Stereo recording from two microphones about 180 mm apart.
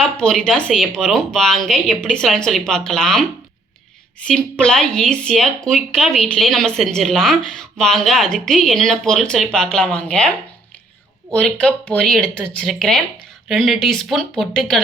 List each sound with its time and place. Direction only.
0.0 s speech: 5° left (ahead or behind)
4.3 s speech: 5° left (ahead or behind)